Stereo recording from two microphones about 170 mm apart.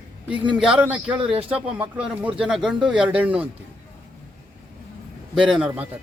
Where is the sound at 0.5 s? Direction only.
5° right (ahead or behind).